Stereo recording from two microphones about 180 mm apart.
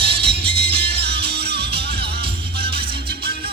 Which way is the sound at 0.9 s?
65° right (ahead or behind).